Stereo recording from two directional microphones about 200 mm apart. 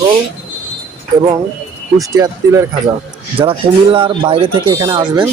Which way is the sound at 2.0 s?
15° right (ahead or behind).